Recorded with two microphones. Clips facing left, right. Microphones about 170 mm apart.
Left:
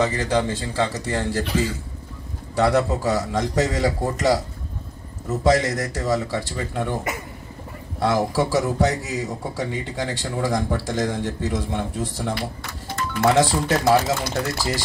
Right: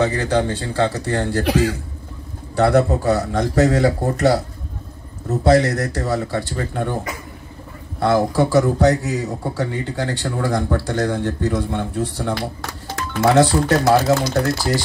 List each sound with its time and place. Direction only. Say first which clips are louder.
0.0 s speech: right 3 dB; 65° right (ahead or behind)
2.5 s speech: right 4 dB; 60° right (ahead or behind)
5.4 s speech: right 4 dB; 65° right (ahead or behind)
8.0 s speech: right 4 dB; 65° right (ahead or behind)